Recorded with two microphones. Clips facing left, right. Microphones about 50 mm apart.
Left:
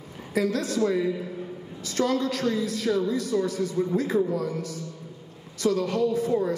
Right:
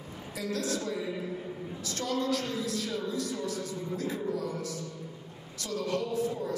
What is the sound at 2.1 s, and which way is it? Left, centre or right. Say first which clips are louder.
A man's voice: left 5 dB; left.